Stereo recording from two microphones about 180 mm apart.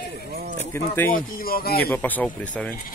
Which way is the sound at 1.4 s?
55° left (ahead or behind).